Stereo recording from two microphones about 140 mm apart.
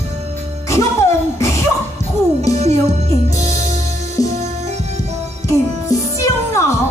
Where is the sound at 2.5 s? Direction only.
50° right (ahead or behind).